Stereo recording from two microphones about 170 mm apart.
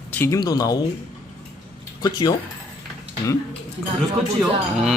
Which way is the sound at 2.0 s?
25° left (ahead or behind).